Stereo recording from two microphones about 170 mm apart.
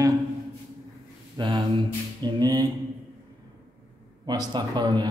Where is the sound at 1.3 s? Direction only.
25° right (ahead or behind).